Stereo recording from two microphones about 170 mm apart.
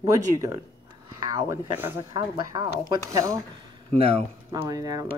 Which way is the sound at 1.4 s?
15° right (ahead or behind).